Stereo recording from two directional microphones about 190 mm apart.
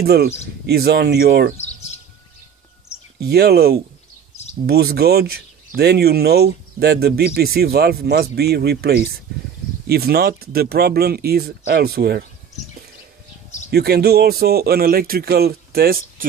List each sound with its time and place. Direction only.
0.0 s speech: 55° right (ahead or behind)
3.2 s speech: 55° right (ahead or behind)
13.7 s speech: 55° right (ahead or behind)